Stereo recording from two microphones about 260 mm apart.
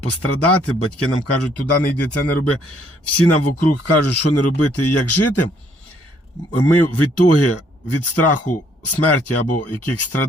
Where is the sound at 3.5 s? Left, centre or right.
Left.